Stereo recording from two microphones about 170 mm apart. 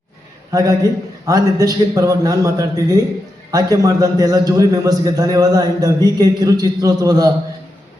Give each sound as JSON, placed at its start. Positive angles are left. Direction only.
{"t": 0.5, "sound": "a man's voice", "side_deg": -20}